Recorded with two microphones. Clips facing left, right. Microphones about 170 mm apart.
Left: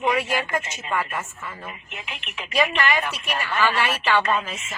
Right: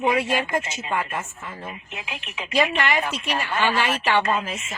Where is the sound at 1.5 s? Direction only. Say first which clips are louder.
Right 1 dB; 30° right (ahead or behind).